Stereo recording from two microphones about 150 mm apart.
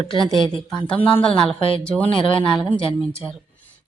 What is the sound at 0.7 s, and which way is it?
Speech, 5° left (ahead or behind).